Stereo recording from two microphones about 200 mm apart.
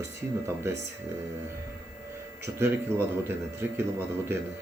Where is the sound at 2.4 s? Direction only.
15° right (ahead or behind).